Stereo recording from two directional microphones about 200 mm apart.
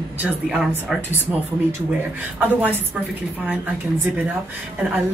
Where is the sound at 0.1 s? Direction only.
5° right (ahead or behind).